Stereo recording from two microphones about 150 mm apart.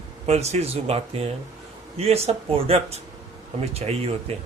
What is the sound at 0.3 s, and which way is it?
Speech, 45° right (ahead or behind).